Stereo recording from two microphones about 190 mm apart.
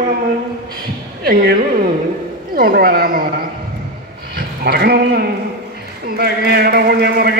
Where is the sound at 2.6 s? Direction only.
50° right (ahead or behind).